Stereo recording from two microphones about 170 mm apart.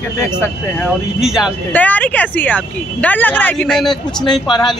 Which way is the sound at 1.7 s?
10° left (ahead or behind).